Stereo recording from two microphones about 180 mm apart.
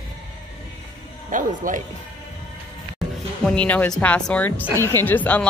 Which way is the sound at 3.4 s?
5° left (ahead or behind).